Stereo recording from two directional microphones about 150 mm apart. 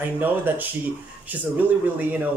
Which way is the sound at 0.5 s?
10° right (ahead or behind).